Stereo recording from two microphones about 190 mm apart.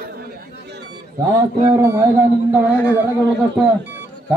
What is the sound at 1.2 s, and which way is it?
Speech, 15° right (ahead or behind).